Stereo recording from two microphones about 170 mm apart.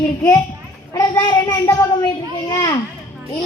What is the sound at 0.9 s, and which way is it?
Speech, 15° left (ahead or behind).